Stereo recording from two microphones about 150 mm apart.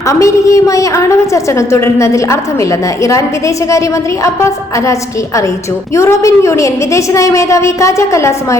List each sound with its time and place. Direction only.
0.1 s a woman's voice: 20° left (ahead or behind)